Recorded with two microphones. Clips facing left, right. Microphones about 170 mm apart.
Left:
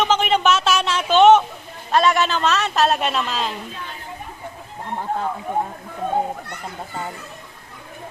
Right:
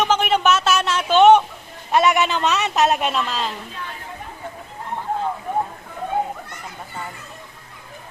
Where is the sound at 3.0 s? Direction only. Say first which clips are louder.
Even; centre (ahead or behind).